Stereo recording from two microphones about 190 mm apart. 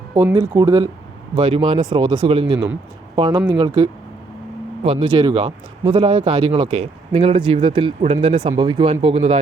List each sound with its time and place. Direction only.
0.1 s speech: 10° right (ahead or behind); by 9.4 s 35° right (ahead or behind)